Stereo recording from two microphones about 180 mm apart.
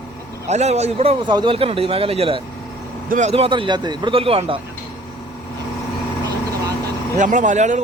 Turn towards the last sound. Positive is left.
turn(degrees=-40)  # may be behind; listen again after turning